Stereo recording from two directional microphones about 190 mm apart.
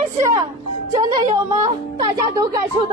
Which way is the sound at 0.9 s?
25° right (ahead or behind).